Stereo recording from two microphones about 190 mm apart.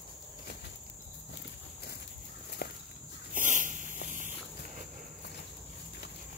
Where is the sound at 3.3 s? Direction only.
45° right (ahead or behind).